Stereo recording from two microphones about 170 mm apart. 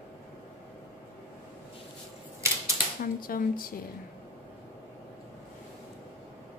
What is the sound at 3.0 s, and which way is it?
Speech, 55° left (ahead or behind).